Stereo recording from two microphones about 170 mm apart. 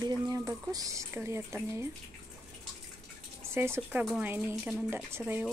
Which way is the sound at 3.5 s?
15° right (ahead or behind).